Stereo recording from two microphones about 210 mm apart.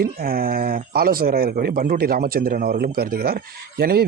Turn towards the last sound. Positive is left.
turn(degrees=-50)  # may be behind; listen again after turning